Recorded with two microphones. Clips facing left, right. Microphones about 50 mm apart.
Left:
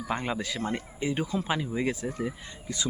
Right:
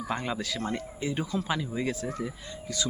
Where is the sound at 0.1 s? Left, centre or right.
Centre.